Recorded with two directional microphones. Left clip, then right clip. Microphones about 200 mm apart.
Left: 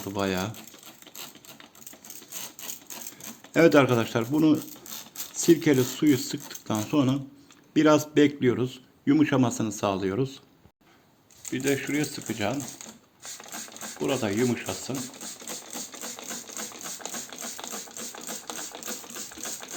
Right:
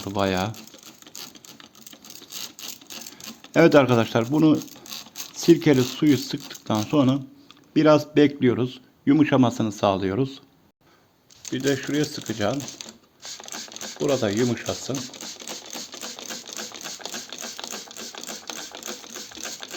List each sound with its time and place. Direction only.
0.0 s a man's voice: 45° right (ahead or behind)
3.5 s a man's voice: 40° right (ahead or behind)
11.4 s a man's voice: 40° right (ahead or behind)
12.6 s typewriter: 20° right (ahead or behind)
14.0 s speech: 45° right (ahead or behind)
15.4 s typewriter: 15° right (ahead or behind)